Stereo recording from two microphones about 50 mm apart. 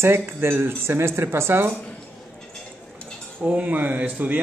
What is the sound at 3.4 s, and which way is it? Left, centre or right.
Speech, right.